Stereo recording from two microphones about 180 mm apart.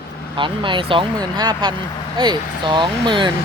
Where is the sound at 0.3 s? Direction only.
25° right (ahead or behind).